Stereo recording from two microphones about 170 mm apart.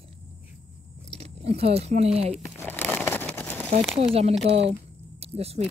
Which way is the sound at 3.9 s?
35° right (ahead or behind).